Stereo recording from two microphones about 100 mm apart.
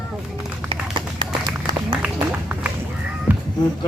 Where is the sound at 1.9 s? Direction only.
15° right (ahead or behind).